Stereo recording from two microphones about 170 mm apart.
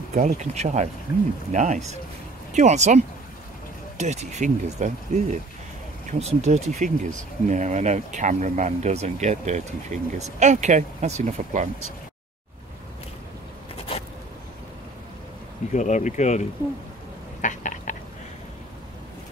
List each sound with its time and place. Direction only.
0.1 s speech: 45° right (ahead or behind)
4.0 s speech: 40° right (ahead or behind)
15.7 s speech: 45° left (ahead or behind)
17.4 s a sound: 45° left (ahead or behind)